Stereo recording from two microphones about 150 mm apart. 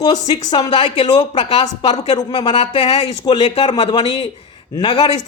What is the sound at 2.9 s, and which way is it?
Speech, 25° left (ahead or behind).